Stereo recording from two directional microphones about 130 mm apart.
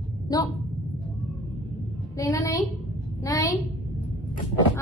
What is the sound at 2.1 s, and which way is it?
A woman's voice, 25° left (ahead or behind).